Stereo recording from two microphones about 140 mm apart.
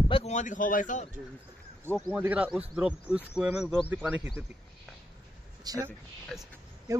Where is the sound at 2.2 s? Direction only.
10° right (ahead or behind).